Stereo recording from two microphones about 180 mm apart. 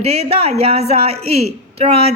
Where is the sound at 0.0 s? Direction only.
35° right (ahead or behind).